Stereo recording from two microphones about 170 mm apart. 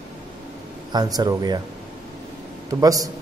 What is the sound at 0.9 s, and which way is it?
Speech, 25° right (ahead or behind).